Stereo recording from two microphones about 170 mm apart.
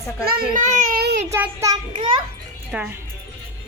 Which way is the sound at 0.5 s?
50° right (ahead or behind).